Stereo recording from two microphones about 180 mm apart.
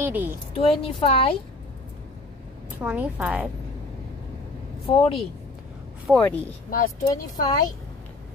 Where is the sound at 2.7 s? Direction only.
10° right (ahead or behind).